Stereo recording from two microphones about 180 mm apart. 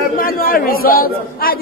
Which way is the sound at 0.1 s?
50° left (ahead or behind).